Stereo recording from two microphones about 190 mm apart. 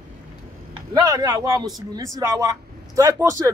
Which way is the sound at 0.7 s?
20° right (ahead or behind).